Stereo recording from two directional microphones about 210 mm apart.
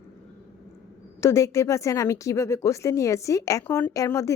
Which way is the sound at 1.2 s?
15° left (ahead or behind).